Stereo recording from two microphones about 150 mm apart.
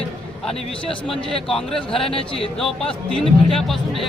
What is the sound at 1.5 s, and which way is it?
Speech, 5° left (ahead or behind).